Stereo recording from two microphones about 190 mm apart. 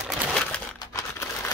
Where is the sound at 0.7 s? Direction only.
15° left (ahead or behind).